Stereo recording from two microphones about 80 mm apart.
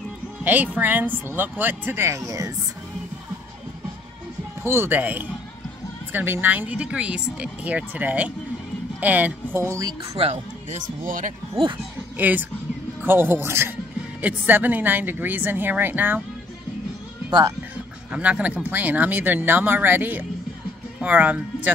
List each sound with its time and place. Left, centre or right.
0.4 s speech: right
4.6 s speech: right
9.6 s speech: right
12.2 s speech: right
18.1 s speech: centre